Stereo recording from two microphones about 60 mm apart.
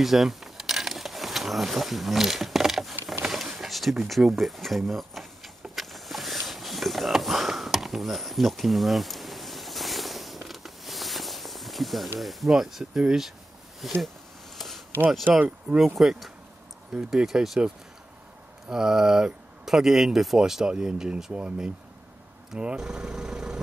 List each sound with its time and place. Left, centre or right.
0.0 s a sound: centre
12.2 s speech: centre
15.2 s speech: right
16.0 s speech: centre
18.7 s speech: centre